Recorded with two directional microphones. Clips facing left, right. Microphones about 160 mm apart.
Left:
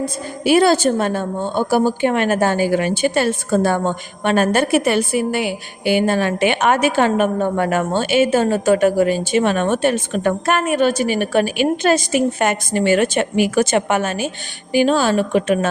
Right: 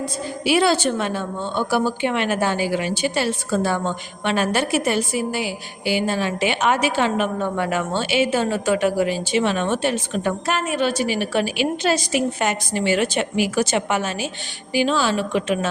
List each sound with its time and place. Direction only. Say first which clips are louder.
0.0 s a woman's voice: left 4 dB; 45° left (ahead or behind)
4.9 s a woman's voice: left 4 dB; 60° left (ahead or behind)